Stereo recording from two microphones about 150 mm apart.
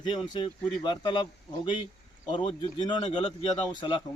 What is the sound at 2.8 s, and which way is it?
Speech, 45° left (ahead or behind).